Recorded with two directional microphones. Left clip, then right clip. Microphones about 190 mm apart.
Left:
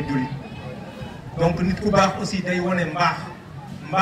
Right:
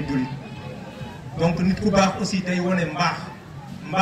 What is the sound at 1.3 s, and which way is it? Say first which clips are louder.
A man's voice: left 1 dB; 45° left (ahead or behind).